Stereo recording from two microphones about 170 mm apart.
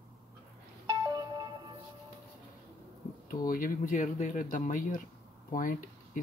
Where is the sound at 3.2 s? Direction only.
55° left (ahead or behind).